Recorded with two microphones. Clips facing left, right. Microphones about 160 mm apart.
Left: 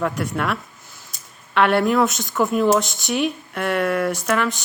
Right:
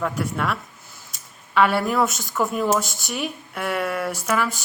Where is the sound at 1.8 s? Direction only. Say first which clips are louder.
Left 4 dB; 5° right (ahead or behind).